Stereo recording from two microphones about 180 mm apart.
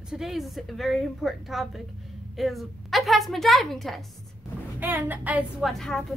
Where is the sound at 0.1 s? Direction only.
Centre (ahead or behind).